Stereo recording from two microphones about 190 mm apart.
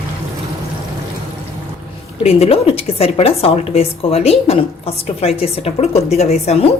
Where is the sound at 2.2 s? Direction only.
35° left (ahead or behind).